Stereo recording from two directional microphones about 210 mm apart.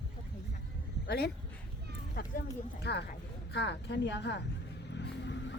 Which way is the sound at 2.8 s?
55° left (ahead or behind).